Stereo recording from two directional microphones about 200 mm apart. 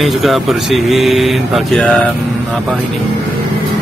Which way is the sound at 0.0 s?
Centre (ahead or behind).